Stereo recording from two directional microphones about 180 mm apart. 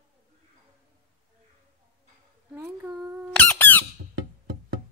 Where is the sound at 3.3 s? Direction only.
5° left (ahead or behind).